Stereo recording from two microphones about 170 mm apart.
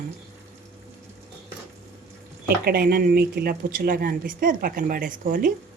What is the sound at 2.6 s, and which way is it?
A woman's voice, 60° right (ahead or behind).